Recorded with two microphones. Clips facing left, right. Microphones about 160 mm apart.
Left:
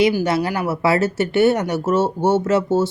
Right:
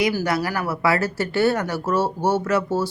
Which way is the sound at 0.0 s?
20° left (ahead or behind).